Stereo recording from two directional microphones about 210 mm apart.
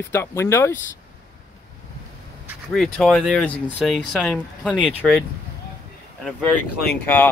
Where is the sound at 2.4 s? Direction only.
Centre (ahead or behind).